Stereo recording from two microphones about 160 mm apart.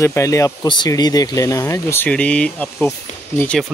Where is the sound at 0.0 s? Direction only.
20° left (ahead or behind).